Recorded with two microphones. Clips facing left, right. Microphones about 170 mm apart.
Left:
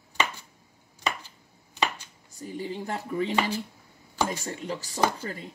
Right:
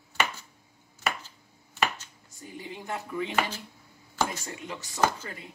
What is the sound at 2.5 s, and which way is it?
Speech, 35° left (ahead or behind).